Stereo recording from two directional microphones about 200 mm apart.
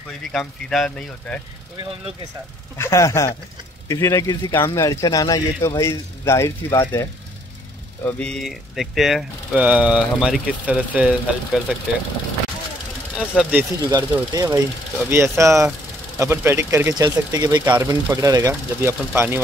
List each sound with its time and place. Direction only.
0.3 s speech: centre (ahead or behind)
2.8 s speech: 15° left (ahead or behind); by 11.6 s 5° right (ahead or behind)
13.1 s speech: 5° right (ahead or behind)